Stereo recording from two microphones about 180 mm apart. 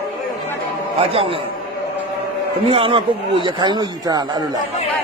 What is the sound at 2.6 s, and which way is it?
A man's voice, 30° right (ahead or behind).